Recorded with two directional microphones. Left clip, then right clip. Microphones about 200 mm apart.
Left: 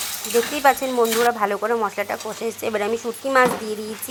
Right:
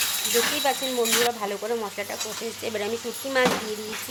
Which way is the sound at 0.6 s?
15° left (ahead or behind).